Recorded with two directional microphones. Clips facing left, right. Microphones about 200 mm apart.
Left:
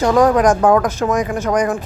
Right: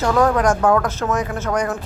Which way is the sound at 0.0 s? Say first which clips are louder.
Left 4 dB; 15° left (ahead or behind).